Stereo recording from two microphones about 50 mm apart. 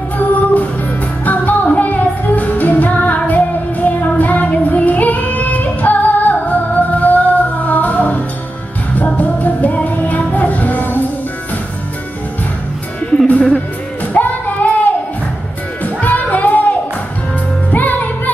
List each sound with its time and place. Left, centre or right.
0.2 s music: left
13.3 s music: left